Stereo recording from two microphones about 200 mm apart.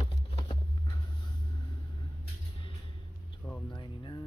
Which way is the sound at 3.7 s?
20° left (ahead or behind).